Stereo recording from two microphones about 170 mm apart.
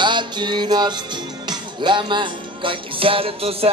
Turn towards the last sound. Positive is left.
turn(degrees=-35)  # may be behind; listen again after turning